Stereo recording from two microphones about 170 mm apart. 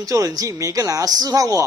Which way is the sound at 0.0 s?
20° right (ahead or behind).